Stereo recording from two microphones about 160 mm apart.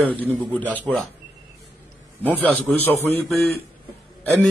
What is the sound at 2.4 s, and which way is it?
Speech, 10° left (ahead or behind).